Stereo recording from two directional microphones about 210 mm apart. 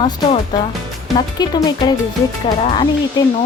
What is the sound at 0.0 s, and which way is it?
Speech, 25° left (ahead or behind).